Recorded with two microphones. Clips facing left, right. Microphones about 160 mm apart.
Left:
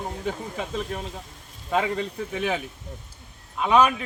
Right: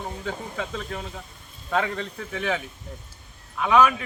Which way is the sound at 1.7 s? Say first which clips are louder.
Left 2 dB; 10° left (ahead or behind).